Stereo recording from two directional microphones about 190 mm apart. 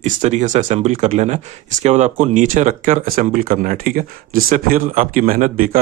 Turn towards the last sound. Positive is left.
turn(degrees=-45)  # may be behind; listen again after turning